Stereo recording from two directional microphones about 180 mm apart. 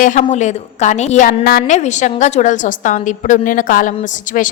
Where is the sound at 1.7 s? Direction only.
40° left (ahead or behind).